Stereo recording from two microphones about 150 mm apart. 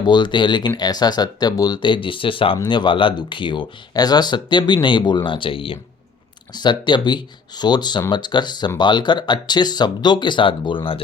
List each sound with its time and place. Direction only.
0.0 s speech: 30° left (ahead or behind)